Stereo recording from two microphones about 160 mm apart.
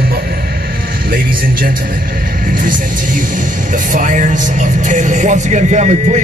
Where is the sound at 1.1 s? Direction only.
65° right (ahead or behind).